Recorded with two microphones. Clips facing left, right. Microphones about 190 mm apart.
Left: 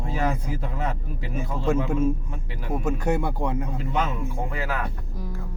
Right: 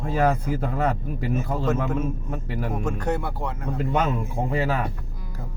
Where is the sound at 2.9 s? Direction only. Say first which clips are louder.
Left 4 dB; 10° left (ahead or behind).